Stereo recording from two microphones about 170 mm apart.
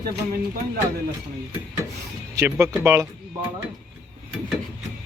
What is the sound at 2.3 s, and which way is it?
Speech, 20° right (ahead or behind).